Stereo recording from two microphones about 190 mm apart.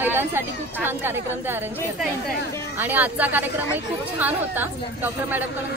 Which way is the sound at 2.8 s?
10° right (ahead or behind).